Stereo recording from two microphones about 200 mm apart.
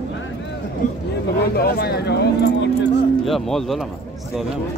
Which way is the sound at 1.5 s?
50° left (ahead or behind).